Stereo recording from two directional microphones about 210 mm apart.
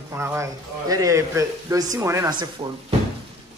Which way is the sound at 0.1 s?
10° right (ahead or behind).